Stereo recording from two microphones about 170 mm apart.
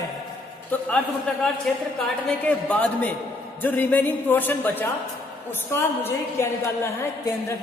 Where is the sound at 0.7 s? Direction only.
10° left (ahead or behind).